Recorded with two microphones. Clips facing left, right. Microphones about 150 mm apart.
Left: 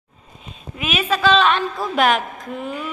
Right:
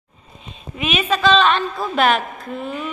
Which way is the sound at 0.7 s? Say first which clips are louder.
Right 1 dB; 5° left (ahead or behind).